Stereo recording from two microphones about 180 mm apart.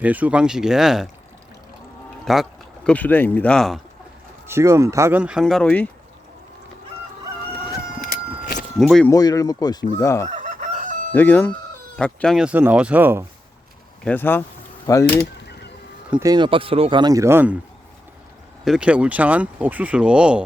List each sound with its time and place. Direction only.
0.0 s speech: 10° right (ahead or behind)
2.2 s speech: centre (ahead or behind)
4.4 s speech: 15° right (ahead or behind); by 5.9 s 5° left (ahead or behind)
8.0 s a sound: 55° left (ahead or behind)
8.8 s speech: centre (ahead or behind)
9.0 s speech: 20° left (ahead or behind)
10.2 s chicken: 40° right (ahead or behind)
11.1 s speech: 10° left (ahead or behind); by 13.2 s 10° right (ahead or behind)
14.0 s speech: 10° left (ahead or behind)
16.1 s speech: 25° right (ahead or behind)
18.6 s speech: 5° right (ahead or behind)